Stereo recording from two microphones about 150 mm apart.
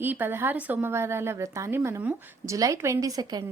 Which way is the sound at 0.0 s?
15° right (ahead or behind).